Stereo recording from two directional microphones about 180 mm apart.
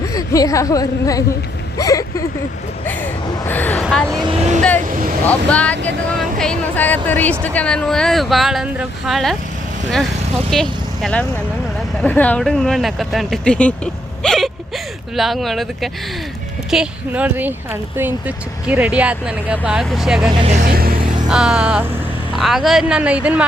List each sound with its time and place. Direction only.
0.1 s a woman's voice: 20° left (ahead or behind)
2.8 s a sound: 10° left (ahead or behind)
3.8 s speech: centre (ahead or behind)
4.1 s speech: 25° right (ahead or behind)
4.4 s speech: 40° right (ahead or behind)
5.2 s speech: 5° left (ahead or behind)
10.5 s speech: 5° left (ahead or behind)
14.2 s whimper: centre (ahead or behind)
15.1 s a woman's voice: centre (ahead or behind)
20.3 s speech: 30° right (ahead or behind)
20.6 s music: 55° right (ahead or behind)
21.2 s speech: 5° right (ahead or behind)